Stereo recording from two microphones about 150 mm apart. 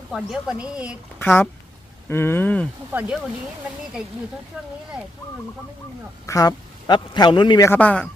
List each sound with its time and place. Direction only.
0.1 s a woman's voice: 5° right (ahead or behind)
1.2 s speech: 15° left (ahead or behind)
2.9 s speech: 10° right (ahead or behind)
4.5 s a woman's voice: 5° right (ahead or behind)
6.2 s a man's voice: 25° left (ahead or behind)
7.7 s speech: 10° left (ahead or behind)